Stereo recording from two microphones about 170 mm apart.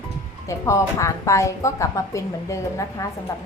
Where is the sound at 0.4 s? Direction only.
15° left (ahead or behind).